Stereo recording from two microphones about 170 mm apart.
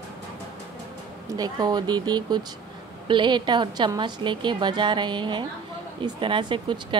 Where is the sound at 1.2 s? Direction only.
20° right (ahead or behind).